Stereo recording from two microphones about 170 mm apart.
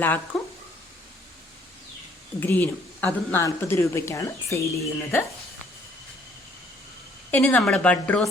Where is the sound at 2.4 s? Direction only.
10° left (ahead or behind).